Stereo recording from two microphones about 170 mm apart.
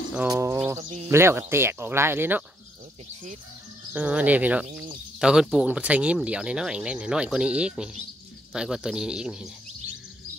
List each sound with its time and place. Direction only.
0.3 s bird: 15° right (ahead or behind)
1.0 s speech: 15° right (ahead or behind)
3.9 s speech: 10° right (ahead or behind)